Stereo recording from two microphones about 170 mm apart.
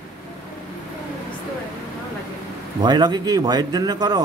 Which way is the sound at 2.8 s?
25° right (ahead or behind).